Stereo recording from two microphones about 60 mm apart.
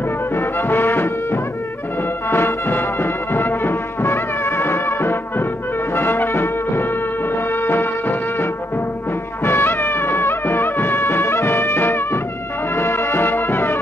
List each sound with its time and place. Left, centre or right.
0.3 s music: left